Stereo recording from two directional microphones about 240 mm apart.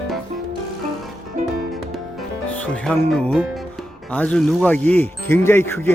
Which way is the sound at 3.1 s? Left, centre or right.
Centre.